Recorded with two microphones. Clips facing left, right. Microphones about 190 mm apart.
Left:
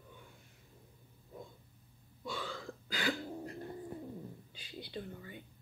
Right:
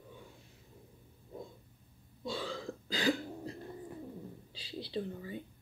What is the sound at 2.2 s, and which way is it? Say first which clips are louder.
Throat clearing: right 4 dB; 30° right (ahead or behind).